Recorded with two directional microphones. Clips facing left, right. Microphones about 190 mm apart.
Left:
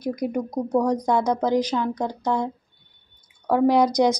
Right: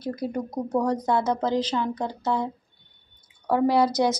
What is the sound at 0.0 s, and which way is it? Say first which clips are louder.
A woman's voice: left 3 dB; 15° left (ahead or behind).